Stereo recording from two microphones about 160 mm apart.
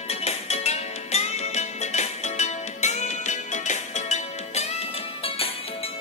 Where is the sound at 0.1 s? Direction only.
40° left (ahead or behind).